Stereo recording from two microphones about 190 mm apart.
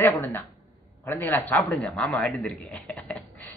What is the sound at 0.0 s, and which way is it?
A man's voice, 10° left (ahead or behind).